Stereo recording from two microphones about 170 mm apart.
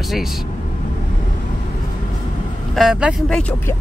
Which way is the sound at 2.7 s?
Centre (ahead or behind).